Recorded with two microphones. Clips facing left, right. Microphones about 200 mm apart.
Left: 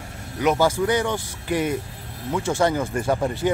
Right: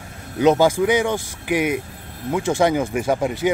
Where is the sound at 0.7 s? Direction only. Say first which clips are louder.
Right 3 dB; 15° right (ahead or behind).